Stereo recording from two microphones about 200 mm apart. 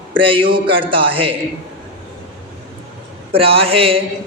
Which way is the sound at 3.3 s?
30° right (ahead or behind).